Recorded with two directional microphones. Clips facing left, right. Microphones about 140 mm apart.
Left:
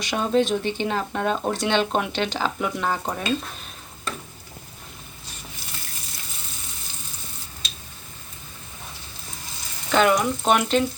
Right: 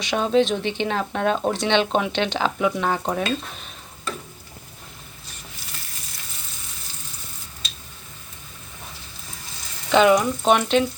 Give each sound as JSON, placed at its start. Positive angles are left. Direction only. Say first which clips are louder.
{"t": 0.0, "sound": "speech", "louder": "right 2 dB", "side_deg": 5}
{"t": 0.4, "sound": "speech", "louder": "even", "side_deg": 45}
{"t": 0.9, "sound": "speech", "louder": "right 4 dB", "side_deg": 5}
{"t": 9.9, "sound": "speech", "louder": "right 3 dB", "side_deg": 0}